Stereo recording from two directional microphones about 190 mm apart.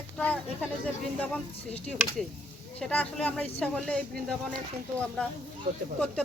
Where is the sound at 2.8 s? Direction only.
5° left (ahead or behind).